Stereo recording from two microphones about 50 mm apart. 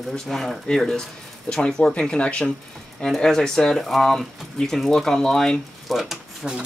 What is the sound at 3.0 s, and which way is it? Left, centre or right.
Speech, centre.